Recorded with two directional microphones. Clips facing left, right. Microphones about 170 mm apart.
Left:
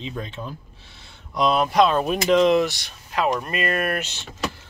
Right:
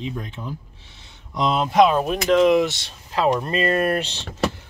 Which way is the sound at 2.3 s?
10° right (ahead or behind).